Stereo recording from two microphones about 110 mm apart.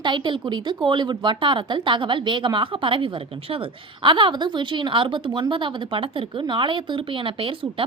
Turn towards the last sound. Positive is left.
turn(degrees=-50)  # may be behind; listen again after turning